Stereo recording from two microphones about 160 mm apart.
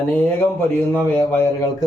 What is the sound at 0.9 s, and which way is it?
Speech, 15° left (ahead or behind).